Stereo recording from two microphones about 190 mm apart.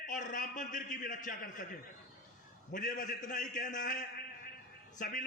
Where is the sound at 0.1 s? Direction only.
45° left (ahead or behind).